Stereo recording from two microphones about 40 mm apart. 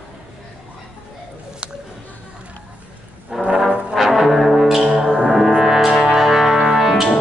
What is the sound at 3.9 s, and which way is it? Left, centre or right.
Music, centre.